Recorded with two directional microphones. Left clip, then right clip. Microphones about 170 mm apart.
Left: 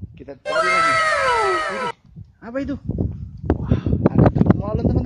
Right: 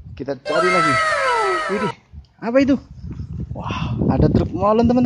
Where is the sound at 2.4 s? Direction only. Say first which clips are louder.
Right 10 dB; 10° right (ahead or behind).